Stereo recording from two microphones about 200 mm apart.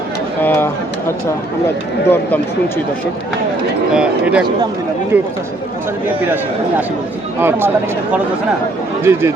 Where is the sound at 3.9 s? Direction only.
5° right (ahead or behind).